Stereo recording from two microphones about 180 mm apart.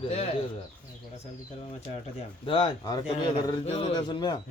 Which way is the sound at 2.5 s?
30° left (ahead or behind).